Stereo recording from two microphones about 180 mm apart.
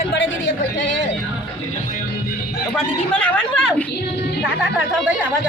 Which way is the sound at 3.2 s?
5° left (ahead or behind).